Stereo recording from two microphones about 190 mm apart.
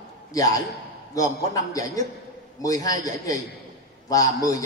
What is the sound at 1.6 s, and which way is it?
A man's voice, 20° left (ahead or behind).